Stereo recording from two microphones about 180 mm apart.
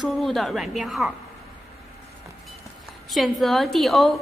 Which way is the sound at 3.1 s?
Centre (ahead or behind).